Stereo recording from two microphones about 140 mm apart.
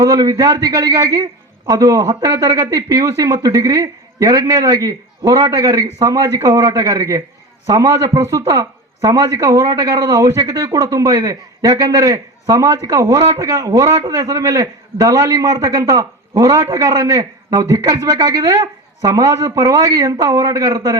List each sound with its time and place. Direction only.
0.0 s a man's voice: 25° right (ahead or behind)